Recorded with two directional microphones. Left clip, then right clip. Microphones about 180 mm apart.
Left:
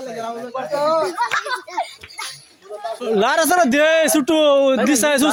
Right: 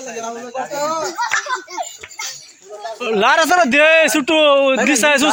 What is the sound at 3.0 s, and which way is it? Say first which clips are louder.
Speech: right 3 dB; 15° left (ahead or behind).